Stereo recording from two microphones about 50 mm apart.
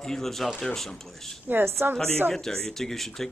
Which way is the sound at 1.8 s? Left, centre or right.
Right.